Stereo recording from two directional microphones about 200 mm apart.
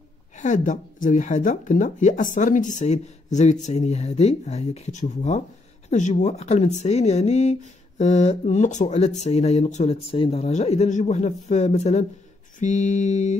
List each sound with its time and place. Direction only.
0.4 s speech: 40° left (ahead or behind)